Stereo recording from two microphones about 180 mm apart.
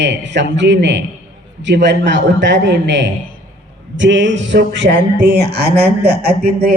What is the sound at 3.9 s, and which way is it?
Speech, 90° right.